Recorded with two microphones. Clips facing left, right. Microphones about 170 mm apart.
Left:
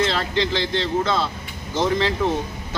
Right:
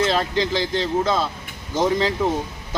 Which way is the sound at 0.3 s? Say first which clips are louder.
Right 1 dB; 40° right (ahead or behind).